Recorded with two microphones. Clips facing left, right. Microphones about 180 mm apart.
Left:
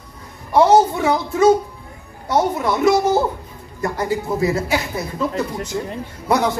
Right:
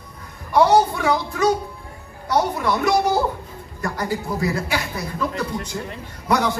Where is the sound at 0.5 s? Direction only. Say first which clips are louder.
Left 3 dB; 25° left (ahead or behind).